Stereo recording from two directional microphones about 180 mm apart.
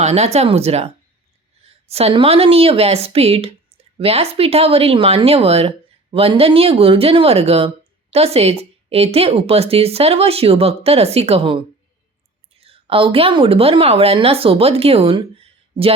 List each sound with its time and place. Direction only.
0.0 s speech: 35° right (ahead or behind)
1.9 s a woman's voice: 35° right (ahead or behind)